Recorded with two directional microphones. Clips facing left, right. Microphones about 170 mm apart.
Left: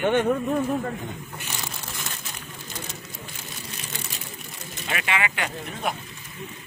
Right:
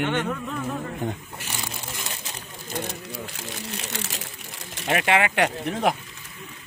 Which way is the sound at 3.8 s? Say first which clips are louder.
Right 4 dB; 80° right.